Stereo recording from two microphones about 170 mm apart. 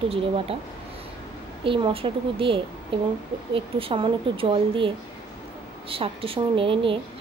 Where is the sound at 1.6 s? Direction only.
30° right (ahead or behind).